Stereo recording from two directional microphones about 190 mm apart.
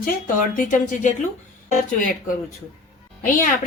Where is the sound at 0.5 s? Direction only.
45° left (ahead or behind).